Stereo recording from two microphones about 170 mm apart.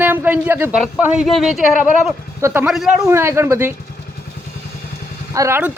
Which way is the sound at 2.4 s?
15° right (ahead or behind).